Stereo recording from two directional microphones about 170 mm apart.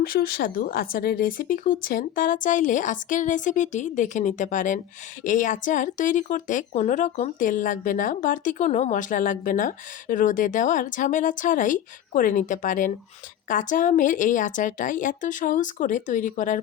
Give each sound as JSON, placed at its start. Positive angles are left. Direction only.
{"t": 0.0, "sound": "speech", "side_deg": 60}